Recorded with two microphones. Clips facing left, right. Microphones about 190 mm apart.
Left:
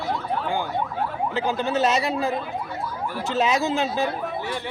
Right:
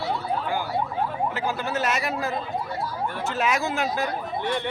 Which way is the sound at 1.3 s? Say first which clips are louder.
Left 4 dB; 20° left (ahead or behind).